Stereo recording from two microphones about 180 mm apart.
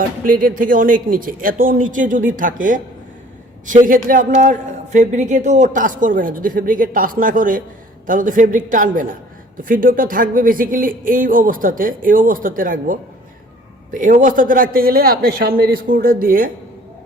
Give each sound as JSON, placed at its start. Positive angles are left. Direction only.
{"t": 0.3, "sound": "a man's voice", "side_deg": -50}